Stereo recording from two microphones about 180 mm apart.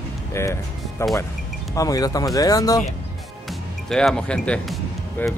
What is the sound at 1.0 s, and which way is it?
Speech, 15° left (ahead or behind).